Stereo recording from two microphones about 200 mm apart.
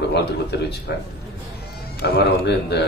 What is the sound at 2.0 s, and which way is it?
Speech, 55° left (ahead or behind).